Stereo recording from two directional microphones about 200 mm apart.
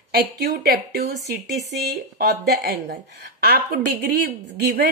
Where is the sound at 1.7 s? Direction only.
55° right (ahead or behind).